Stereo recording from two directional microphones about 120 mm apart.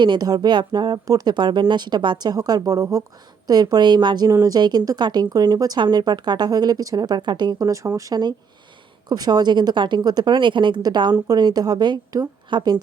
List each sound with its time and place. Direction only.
0.0 s a woman's voice: 35° right (ahead or behind)